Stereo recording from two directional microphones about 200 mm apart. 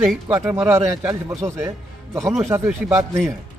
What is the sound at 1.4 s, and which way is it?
Speech, 35° right (ahead or behind).